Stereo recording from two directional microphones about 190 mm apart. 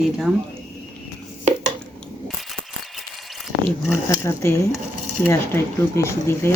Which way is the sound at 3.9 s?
15° left (ahead or behind).